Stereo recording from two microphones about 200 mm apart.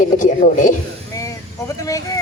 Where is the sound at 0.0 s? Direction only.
40° left (ahead or behind).